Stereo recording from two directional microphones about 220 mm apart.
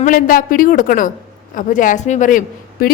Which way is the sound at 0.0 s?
40° left (ahead or behind).